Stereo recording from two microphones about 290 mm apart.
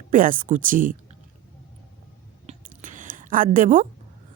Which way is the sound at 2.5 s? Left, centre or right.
Right.